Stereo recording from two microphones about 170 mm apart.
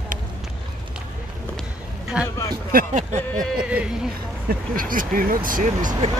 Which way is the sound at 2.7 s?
50° right (ahead or behind).